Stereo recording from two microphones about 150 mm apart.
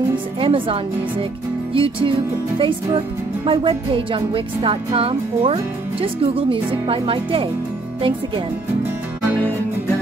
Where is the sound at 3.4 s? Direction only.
35° right (ahead or behind).